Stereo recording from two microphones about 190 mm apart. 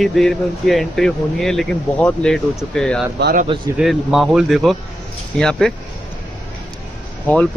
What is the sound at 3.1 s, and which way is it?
Speech, 60° right (ahead or behind).